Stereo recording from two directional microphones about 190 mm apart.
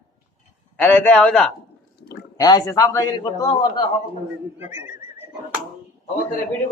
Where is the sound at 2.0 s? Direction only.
60° left (ahead or behind).